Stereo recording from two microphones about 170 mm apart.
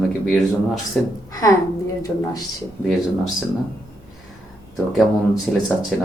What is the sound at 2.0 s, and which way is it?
Speech, 20° left (ahead or behind).